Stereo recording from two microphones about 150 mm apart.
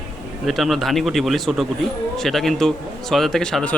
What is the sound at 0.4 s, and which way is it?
Speech, centre (ahead or behind).